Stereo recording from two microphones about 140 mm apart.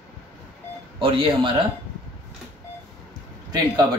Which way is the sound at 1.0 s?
40° right (ahead or behind).